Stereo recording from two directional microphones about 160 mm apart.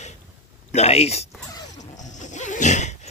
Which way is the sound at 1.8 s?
50° left (ahead or behind).